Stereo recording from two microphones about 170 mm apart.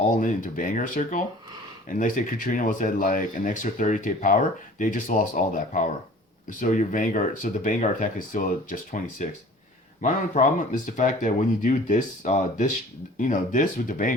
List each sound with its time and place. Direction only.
0.2 s speech: 50° left (ahead or behind)